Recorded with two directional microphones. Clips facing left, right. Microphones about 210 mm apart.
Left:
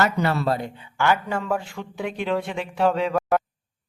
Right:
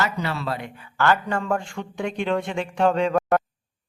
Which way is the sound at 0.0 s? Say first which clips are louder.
Left 4 dB; 50° left (ahead or behind).